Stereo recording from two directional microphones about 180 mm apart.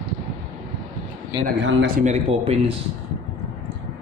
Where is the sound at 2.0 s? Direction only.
40° right (ahead or behind).